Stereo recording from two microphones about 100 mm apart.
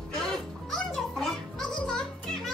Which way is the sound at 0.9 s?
5° left (ahead or behind).